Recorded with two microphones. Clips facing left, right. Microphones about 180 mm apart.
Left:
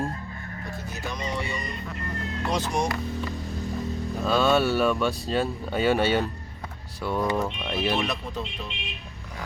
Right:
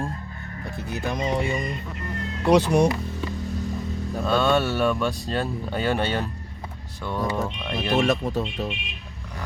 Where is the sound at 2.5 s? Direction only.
65° right (ahead or behind).